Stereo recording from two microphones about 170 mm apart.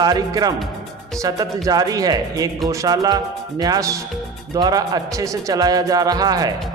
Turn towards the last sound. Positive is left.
turn(degrees=-20)  # may be behind; listen again after turning